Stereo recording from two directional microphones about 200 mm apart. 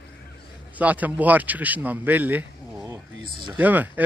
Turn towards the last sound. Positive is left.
turn(degrees=-10)  # may be behind; listen again after turning